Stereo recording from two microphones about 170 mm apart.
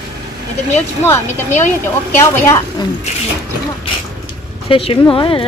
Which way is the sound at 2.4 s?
15° left (ahead or behind).